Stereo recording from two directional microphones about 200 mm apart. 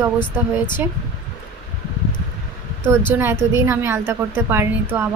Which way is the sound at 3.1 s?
10° right (ahead or behind).